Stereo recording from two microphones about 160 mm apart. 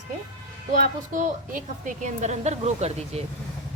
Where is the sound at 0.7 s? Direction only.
55° right (ahead or behind).